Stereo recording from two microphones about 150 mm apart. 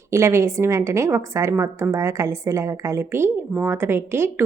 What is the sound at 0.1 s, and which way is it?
A woman's voice, 20° right (ahead or behind).